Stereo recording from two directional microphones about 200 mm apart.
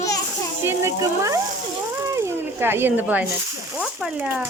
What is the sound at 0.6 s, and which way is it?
Speech, 15° right (ahead or behind).